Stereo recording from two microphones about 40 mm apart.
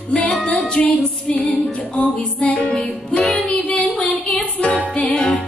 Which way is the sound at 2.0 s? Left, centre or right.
Left.